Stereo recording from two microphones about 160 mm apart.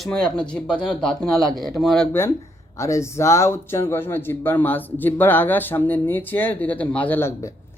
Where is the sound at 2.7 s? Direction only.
20° left (ahead or behind).